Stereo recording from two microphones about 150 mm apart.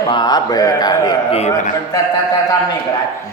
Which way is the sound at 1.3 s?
50° left (ahead or behind).